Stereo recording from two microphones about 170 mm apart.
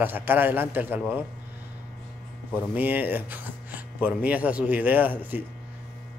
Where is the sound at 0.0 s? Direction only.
10° right (ahead or behind).